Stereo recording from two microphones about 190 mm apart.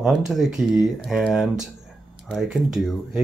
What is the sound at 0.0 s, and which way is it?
Speech, centre (ahead or behind).